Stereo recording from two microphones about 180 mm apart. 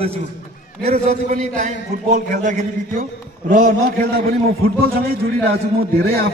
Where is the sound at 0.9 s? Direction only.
40° right (ahead or behind).